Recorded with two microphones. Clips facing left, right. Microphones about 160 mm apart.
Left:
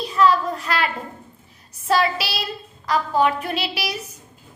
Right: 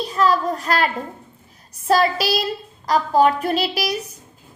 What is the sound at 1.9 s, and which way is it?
Child singing, 40° right (ahead or behind).